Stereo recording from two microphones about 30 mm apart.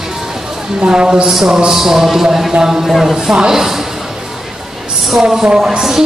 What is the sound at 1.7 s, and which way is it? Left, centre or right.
A woman's voice, centre.